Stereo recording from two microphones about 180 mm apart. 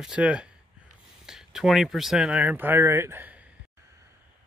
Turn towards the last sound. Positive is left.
turn(degrees=-10)  # may be behind; listen again after turning